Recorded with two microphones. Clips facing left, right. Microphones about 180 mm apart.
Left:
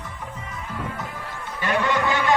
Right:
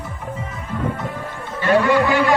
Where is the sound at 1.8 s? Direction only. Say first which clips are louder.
Right 6 dB; 20° left (ahead or behind).